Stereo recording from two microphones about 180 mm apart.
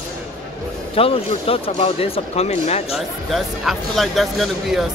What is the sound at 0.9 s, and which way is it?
Speech, 30° left (ahead or behind).